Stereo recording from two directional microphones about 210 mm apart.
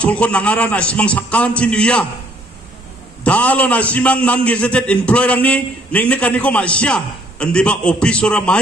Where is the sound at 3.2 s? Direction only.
5° left (ahead or behind).